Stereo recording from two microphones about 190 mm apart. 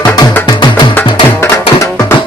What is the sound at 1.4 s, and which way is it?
Music, 15° left (ahead or behind).